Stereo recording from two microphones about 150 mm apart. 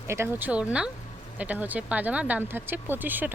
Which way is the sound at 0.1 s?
15° right (ahead or behind).